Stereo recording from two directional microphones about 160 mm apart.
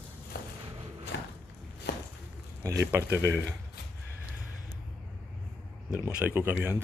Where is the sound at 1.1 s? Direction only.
90° left.